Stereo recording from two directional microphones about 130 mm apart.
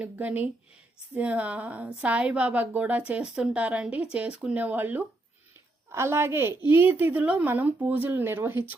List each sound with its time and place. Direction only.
0.0 s a woman's voice: 10° right (ahead or behind)